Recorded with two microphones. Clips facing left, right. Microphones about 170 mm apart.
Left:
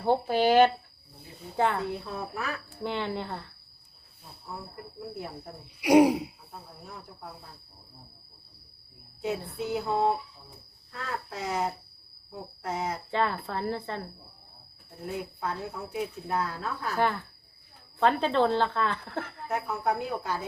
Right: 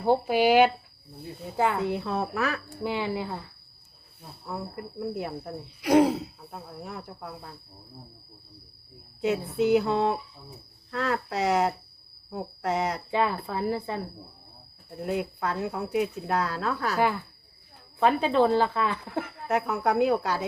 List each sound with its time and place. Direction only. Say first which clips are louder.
0.0 s speech: right 2 dB; 10° right (ahead or behind)
1.8 s speech: right 6 dB; 75° right (ahead or behind)
2.8 s speech: right 2 dB; 10° right (ahead or behind)
4.4 s speech: right 6 dB; 70° right (ahead or behind)
5.8 s throat clearing: left 1 dB; 10° left (ahead or behind)
6.5 s speech: right 6 dB; 70° right (ahead or behind)
9.6 s speech: right 7 dB; 80° right
13.1 s speech: right 2 dB; 10° right (ahead or behind)
15.0 s speech: right 5 dB; 75° right (ahead or behind)
17.0 s speech: left 1 dB; 10° right (ahead or behind)
19.5 s speech: right 4 dB; 75° right (ahead or behind)